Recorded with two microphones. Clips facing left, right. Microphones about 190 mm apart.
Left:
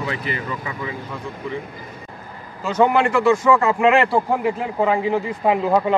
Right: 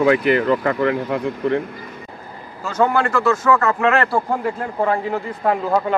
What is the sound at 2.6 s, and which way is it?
A man's voice, 10° left (ahead or behind).